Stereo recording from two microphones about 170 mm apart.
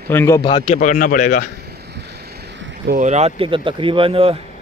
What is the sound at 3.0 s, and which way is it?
Speech, 40° right (ahead or behind).